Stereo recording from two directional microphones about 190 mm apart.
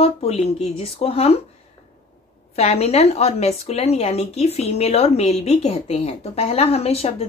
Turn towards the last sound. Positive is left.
turn(degrees=30)  # may be behind; listen again after turning